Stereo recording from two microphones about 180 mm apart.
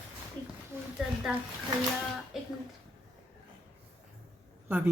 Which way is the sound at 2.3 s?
Centre (ahead or behind).